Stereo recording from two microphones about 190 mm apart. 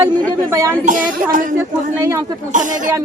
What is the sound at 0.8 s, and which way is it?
Speech, 45° right (ahead or behind).